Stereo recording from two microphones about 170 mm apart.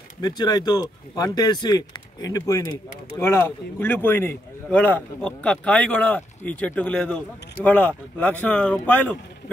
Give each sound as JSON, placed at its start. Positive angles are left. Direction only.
{"t": 0.2, "sound": "a man's voice", "side_deg": 25}